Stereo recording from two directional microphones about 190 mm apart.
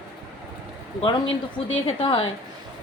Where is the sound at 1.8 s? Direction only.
30° left (ahead or behind).